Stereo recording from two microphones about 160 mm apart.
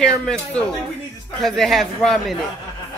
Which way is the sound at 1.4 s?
Centre (ahead or behind).